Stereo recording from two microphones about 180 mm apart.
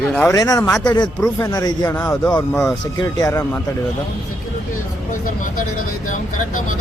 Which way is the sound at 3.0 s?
20° left (ahead or behind).